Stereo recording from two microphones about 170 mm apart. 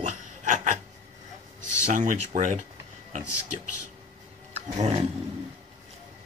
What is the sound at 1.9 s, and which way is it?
Speech, 45° right (ahead or behind).